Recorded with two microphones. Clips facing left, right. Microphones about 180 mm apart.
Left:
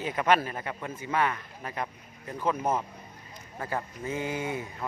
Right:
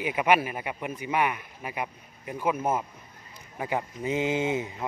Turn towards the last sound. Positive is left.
turn(degrees=-20)  # may be behind; listen again after turning